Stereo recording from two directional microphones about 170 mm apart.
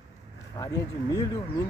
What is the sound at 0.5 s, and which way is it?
Speech, 20° left (ahead or behind).